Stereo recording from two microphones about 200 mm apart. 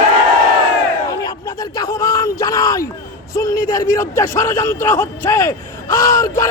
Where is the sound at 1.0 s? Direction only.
15° left (ahead or behind).